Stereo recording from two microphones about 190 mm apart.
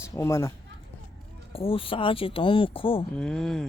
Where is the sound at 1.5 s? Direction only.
30° left (ahead or behind).